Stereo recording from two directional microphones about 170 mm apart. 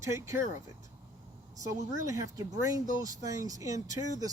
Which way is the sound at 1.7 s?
20° right (ahead or behind).